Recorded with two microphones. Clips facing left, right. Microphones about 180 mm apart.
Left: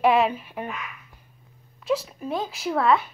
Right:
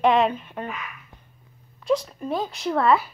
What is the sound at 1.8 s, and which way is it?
A child's voice, 5° left (ahead or behind).